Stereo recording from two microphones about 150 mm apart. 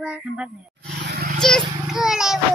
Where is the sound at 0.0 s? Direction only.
5° right (ahead or behind).